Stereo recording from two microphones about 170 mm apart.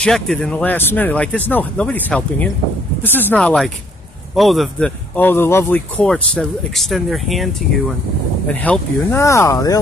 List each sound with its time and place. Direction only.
0.0 s speech: centre (ahead or behind)
8.6 s speech: 10° left (ahead or behind)